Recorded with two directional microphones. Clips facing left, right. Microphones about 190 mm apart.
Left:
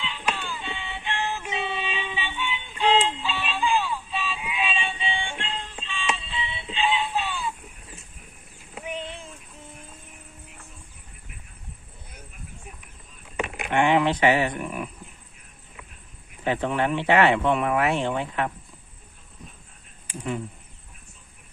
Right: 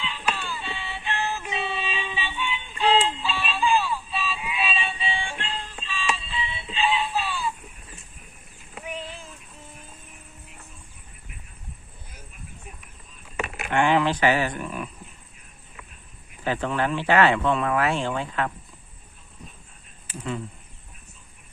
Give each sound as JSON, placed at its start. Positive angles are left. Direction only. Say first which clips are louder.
{"t": 0.0, "sound": "synthetic singing", "louder": "even", "side_deg": 15}
{"t": 5.1, "sound": "music", "louder": "even", "side_deg": -5}
{"t": 5.4, "sound": "music", "louder": "even", "side_deg": 20}
{"t": 8.7, "sound": "a sound", "louder": "left 2 dB", "side_deg": 25}
{"t": 13.3, "sound": "a sound", "louder": "even", "side_deg": 15}
{"t": 16.4, "sound": "speech", "louder": "left 1 dB", "side_deg": 20}
{"t": 20.1, "sound": "insect", "louder": "left 1 dB", "side_deg": 15}